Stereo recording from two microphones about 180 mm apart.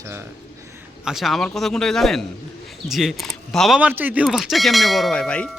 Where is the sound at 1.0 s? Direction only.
Centre (ahead or behind).